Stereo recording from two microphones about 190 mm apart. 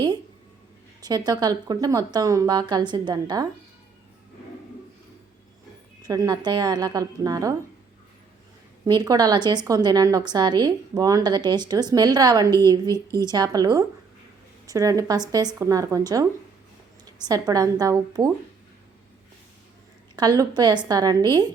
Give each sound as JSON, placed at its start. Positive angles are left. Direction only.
{"t": 1.0, "sound": "a woman's voice", "side_deg": -20}
{"t": 6.0, "sound": "a woman's voice", "side_deg": -20}
{"t": 8.9, "sound": "a woman's voice", "side_deg": -20}
{"t": 20.1, "sound": "a woman's voice", "side_deg": -20}